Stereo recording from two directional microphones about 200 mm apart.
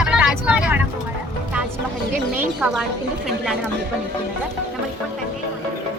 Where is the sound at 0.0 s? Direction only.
5° right (ahead or behind).